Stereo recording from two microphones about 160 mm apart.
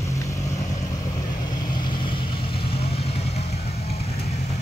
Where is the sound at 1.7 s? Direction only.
30° left (ahead or behind).